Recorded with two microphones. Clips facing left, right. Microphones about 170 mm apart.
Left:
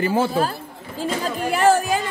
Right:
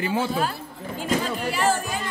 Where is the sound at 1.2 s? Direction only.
55° left (ahead or behind).